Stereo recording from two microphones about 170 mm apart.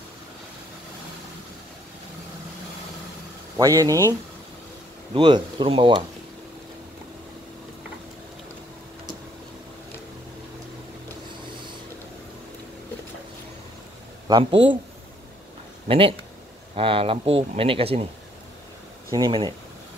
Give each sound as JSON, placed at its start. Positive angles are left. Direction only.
{"t": 3.5, "sound": "speech", "side_deg": -20}
{"t": 5.1, "sound": "speech", "side_deg": -30}
{"t": 14.2, "sound": "speech", "side_deg": -30}
{"t": 15.9, "sound": "speech", "side_deg": -35}
{"t": 19.1, "sound": "speech", "side_deg": -25}